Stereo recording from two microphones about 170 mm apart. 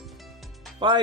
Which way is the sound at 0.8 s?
30° right (ahead or behind).